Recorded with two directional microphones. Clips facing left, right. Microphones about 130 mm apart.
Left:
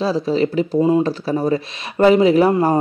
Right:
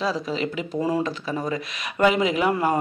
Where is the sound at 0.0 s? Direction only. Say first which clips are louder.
Left 8 dB; 30° left (ahead or behind).